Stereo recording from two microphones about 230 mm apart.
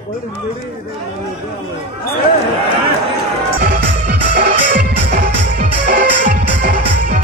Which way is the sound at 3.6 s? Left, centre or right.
Right.